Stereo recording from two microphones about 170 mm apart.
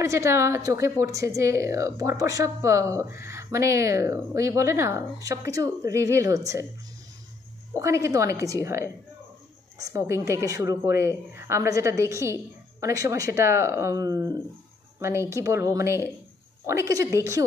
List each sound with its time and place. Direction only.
0.0 s a woman's voice: 15° right (ahead or behind)
7.7 s a woman's voice: 15° right (ahead or behind)